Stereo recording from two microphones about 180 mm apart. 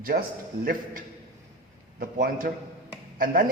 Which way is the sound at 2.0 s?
50° right (ahead or behind).